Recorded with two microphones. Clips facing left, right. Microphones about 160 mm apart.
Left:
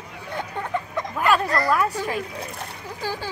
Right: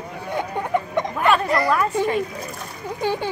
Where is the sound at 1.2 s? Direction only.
5° left (ahead or behind).